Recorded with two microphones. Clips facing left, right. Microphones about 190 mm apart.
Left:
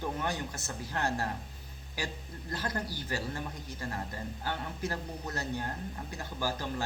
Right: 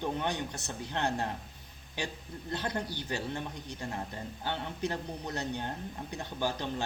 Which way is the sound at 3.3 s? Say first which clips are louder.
Right 1 dB; 20° right (ahead or behind).